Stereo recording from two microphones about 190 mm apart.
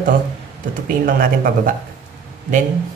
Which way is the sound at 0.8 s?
50° right (ahead or behind).